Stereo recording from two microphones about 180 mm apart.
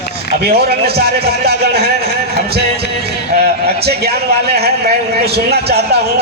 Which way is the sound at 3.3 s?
60° right (ahead or behind).